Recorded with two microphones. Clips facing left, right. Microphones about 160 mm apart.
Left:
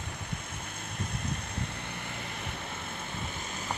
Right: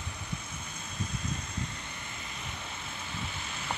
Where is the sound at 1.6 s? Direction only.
60° left (ahead or behind); by 3.7 s 45° left (ahead or behind).